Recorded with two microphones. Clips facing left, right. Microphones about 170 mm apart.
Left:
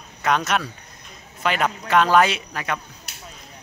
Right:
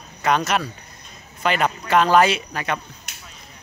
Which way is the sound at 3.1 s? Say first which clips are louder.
Even; 35° left (ahead or behind).